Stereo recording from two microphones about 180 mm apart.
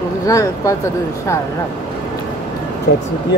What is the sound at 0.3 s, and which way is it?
Speech, 20° left (ahead or behind).